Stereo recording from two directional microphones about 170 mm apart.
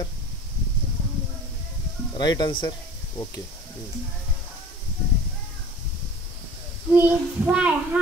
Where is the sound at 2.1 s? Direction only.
25° left (ahead or behind).